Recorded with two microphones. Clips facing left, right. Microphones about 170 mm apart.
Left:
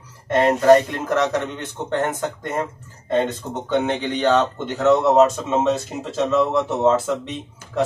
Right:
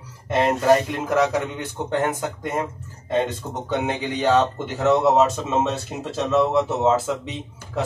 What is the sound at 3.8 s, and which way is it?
Speech, 10° right (ahead or behind).